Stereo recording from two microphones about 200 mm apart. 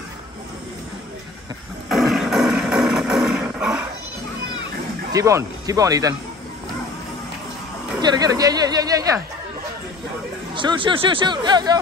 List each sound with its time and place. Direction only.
1.9 s a sound: centre (ahead or behind)
5.1 s speech: 15° right (ahead or behind)
8.0 s speech: 20° right (ahead or behind)
10.5 s speech: 25° right (ahead or behind)